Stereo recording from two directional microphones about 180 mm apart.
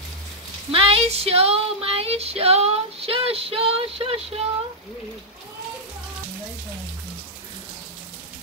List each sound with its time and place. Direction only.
0.7 s child singing: 30° right (ahead or behind)